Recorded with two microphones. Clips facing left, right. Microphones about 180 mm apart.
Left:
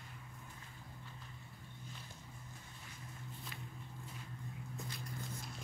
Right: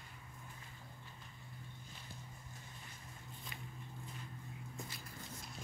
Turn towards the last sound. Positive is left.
turn(degrees=0)  # may be behind; listen again after turning